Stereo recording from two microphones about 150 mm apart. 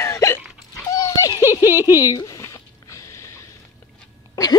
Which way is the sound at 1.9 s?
20° left (ahead or behind).